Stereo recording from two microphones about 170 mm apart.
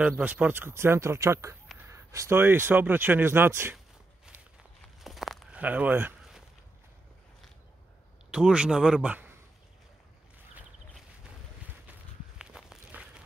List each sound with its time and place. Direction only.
0.1 s speech: 10° right (ahead or behind)
5.0 s walk: centre (ahead or behind)
8.3 s speech: 5° right (ahead or behind)
11.6 s walk: 5° right (ahead or behind)